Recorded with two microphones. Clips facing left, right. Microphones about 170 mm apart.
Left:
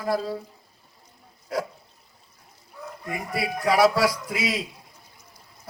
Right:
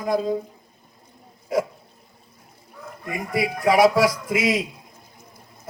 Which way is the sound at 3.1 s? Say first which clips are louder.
Right 4 dB; centre (ahead or behind).